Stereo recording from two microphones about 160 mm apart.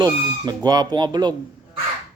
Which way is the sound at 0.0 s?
25° right (ahead or behind).